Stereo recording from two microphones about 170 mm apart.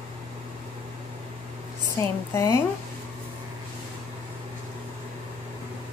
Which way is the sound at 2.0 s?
15° left (ahead or behind).